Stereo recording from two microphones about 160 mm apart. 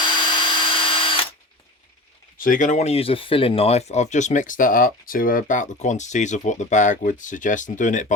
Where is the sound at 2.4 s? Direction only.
55° left (ahead or behind).